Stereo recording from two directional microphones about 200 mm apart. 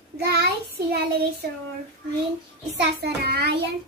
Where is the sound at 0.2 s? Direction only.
55° right (ahead or behind).